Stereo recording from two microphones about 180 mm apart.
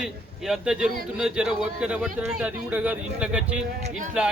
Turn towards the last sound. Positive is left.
turn(degrees=-45)  # may be behind; listen again after turning